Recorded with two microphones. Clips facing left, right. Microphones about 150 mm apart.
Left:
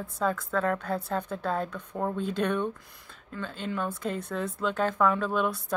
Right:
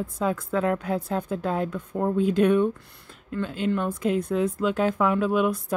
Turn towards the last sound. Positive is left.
turn(degrees=-10)  # may be behind; listen again after turning